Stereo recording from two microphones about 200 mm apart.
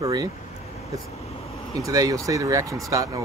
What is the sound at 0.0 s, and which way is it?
Speech, 15° right (ahead or behind).